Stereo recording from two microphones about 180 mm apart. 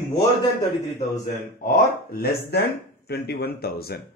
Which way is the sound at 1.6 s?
50° left (ahead or behind).